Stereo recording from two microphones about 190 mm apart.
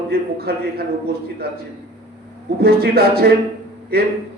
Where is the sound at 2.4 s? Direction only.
55° right (ahead or behind).